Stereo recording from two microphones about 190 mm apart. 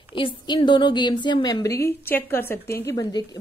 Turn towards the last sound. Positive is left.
turn(degrees=20)  # may be behind; listen again after turning